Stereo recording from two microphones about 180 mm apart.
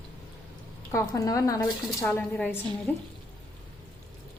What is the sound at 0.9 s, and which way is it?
Speech, 15° left (ahead or behind).